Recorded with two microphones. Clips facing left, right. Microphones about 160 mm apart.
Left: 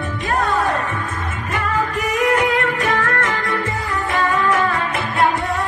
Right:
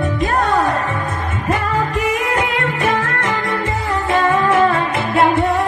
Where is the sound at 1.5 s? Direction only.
35° right (ahead or behind).